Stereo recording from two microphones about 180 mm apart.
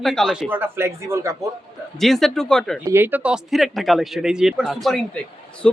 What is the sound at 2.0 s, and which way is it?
Speech, centre (ahead or behind).